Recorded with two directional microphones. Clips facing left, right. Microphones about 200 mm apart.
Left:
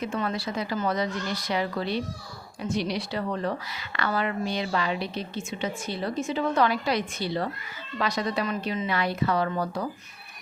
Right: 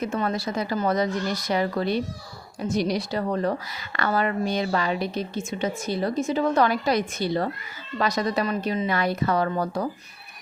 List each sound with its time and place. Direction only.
0.0 s a woman's voice: 40° right (ahead or behind)